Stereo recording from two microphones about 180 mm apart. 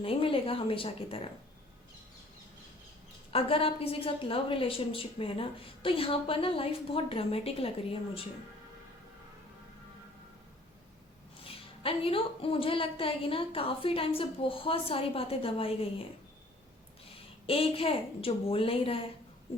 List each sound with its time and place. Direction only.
0.0 s a woman's voice: 30° left (ahead or behind)
3.3 s a woman's voice: 30° left (ahead or behind)
11.4 s a woman's voice: 30° left (ahead or behind)
17.1 s a woman's voice: 30° left (ahead or behind)